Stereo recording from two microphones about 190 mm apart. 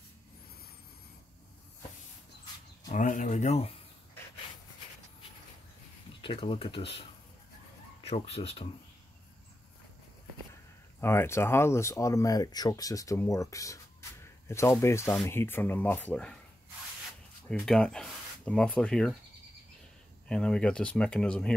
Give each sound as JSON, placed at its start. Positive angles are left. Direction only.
{"t": 2.9, "sound": "speech", "side_deg": 40}
{"t": 6.2, "sound": "speech", "side_deg": 30}
{"t": 11.0, "sound": "speech", "side_deg": 15}
{"t": 17.5, "sound": "speech", "side_deg": 5}
{"t": 20.2, "sound": "speech", "side_deg": 5}